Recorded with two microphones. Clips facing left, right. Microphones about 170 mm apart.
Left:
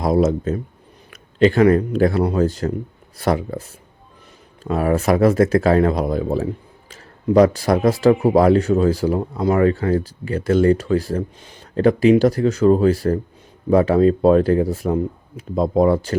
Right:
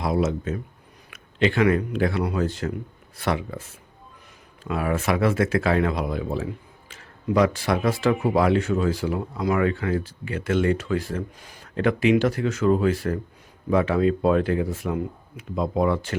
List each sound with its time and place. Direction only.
0.0 s speech: 40° left (ahead or behind)